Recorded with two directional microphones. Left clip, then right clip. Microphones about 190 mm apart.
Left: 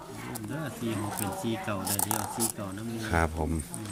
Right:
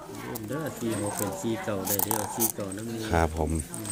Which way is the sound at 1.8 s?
15° left (ahead or behind).